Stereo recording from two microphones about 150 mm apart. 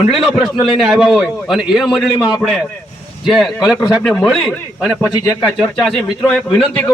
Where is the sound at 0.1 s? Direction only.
Centre (ahead or behind).